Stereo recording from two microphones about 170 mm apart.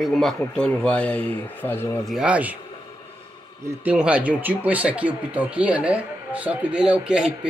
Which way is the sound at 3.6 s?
10° right (ahead or behind).